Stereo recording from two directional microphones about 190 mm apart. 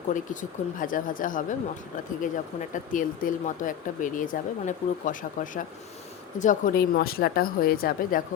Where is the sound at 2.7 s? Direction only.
45° left (ahead or behind).